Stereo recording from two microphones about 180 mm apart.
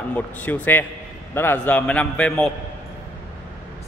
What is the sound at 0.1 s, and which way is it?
A man's voice, 10° left (ahead or behind).